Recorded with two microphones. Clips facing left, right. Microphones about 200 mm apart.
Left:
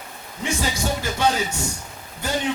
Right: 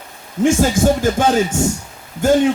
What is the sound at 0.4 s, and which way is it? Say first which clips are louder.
A man's voice: right 12 dB; 50° right (ahead or behind).